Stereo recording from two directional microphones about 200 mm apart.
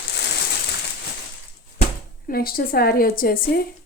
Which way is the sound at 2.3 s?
50° left (ahead or behind).